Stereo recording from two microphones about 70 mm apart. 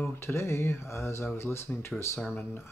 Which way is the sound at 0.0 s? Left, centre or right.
Left.